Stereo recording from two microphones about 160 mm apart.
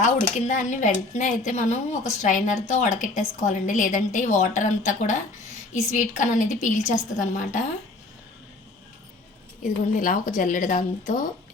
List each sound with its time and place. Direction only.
0.0 s a woman's voice: 50° left (ahead or behind)
10.0 s speech: 55° left (ahead or behind)